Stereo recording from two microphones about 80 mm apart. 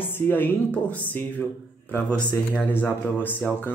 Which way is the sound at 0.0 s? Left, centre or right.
Left.